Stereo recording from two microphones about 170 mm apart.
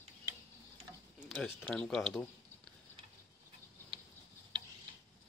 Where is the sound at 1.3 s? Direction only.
5° left (ahead or behind).